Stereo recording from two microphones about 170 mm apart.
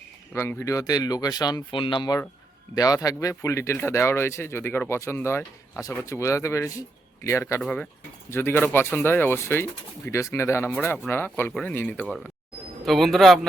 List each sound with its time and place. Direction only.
0.3 s speech: 15° left (ahead or behind); by 13.4 s centre (ahead or behind)